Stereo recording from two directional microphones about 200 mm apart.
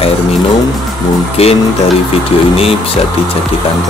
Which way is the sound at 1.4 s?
30° left (ahead or behind).